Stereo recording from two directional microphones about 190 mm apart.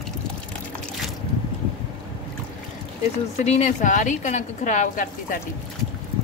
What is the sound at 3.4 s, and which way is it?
A woman's voice, 35° left (ahead or behind).